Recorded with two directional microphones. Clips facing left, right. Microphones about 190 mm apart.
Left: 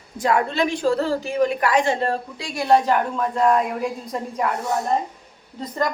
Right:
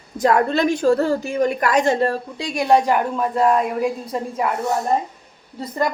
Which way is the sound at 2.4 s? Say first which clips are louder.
Right 2 dB; 20° right (ahead or behind).